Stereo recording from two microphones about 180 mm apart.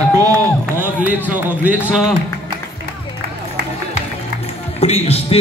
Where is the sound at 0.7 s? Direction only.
10° right (ahead or behind).